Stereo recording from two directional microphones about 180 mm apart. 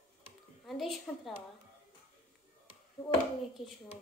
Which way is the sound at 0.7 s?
Centre (ahead or behind).